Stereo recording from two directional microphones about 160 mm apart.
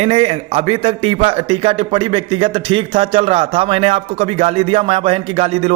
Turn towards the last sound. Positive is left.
turn(degrees=-35)  # may be behind; listen again after turning